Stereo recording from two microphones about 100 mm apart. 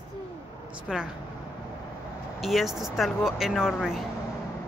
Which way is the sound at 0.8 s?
10° right (ahead or behind).